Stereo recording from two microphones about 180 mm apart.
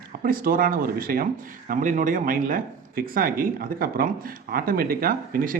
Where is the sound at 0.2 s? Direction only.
50° right (ahead or behind).